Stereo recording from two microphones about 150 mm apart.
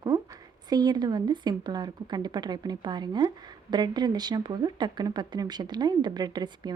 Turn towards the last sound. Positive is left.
turn(degrees=-30)  # may be behind; listen again after turning